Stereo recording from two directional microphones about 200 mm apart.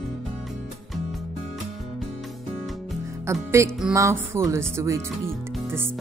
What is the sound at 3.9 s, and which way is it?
Speech, 15° right (ahead or behind).